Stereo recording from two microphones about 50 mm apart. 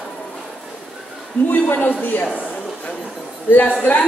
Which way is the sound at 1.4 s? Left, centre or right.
Left.